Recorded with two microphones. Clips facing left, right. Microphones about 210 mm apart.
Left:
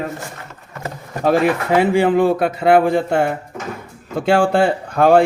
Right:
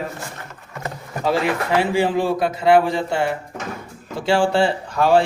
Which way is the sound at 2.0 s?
55° left (ahead or behind).